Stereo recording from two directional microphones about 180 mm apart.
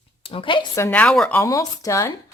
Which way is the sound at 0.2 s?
30° left (ahead or behind).